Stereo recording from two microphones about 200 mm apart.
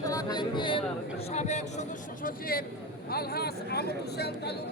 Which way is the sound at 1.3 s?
35° left (ahead or behind).